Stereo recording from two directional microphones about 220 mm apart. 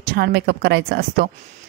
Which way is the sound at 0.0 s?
45° right (ahead or behind).